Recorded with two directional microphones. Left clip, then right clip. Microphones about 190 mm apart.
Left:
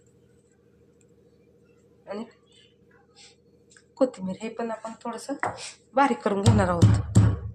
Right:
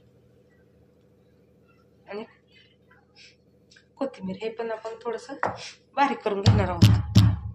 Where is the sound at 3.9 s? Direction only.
30° left (ahead or behind).